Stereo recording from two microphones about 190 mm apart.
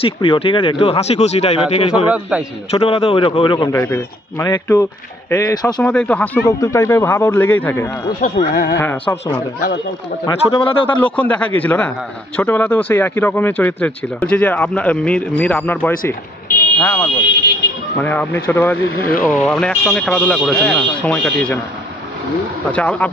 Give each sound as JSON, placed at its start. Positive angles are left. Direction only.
{"t": 0.0, "sound": "speech", "side_deg": 30}
{"t": 2.0, "sound": "a man's voice", "side_deg": -5}
{"t": 2.7, "sound": "a man's voice", "side_deg": 30}
{"t": 5.8, "sound": "speech", "side_deg": 5}
{"t": 8.2, "sound": "speech", "side_deg": 45}
{"t": 8.7, "sound": "speech", "side_deg": 10}
{"t": 10.2, "sound": "a man's voice", "side_deg": 30}
{"t": 11.0, "sound": "speech", "side_deg": 5}
{"t": 22.7, "sound": "speech", "side_deg": 5}